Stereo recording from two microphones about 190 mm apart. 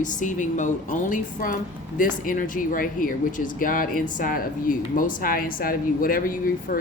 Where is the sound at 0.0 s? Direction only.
40° left (ahead or behind).